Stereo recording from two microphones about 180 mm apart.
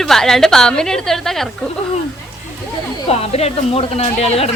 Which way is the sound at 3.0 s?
35° left (ahead or behind).